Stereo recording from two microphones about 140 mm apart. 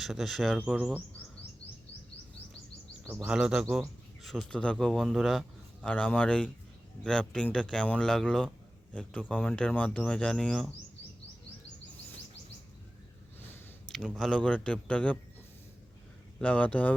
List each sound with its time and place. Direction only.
0.0 s speech: centre (ahead or behind)
3.0 s speech: 20° right (ahead or behind)
3.2 s speech: 5° right (ahead or behind)
13.9 s speech: centre (ahead or behind)
16.4 s speech: 10° left (ahead or behind)